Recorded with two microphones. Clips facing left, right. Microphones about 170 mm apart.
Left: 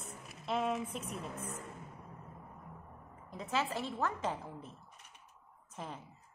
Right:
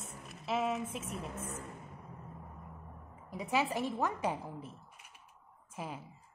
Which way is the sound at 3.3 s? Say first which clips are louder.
Right 3 dB; 15° right (ahead or behind).